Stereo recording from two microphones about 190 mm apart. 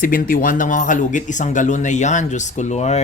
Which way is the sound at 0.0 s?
45° left (ahead or behind).